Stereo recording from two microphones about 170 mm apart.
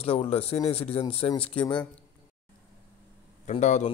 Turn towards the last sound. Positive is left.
turn(degrees=40)  # may be behind; listen again after turning